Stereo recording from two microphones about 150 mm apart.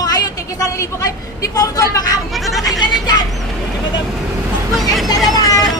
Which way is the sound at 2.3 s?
Centre (ahead or behind).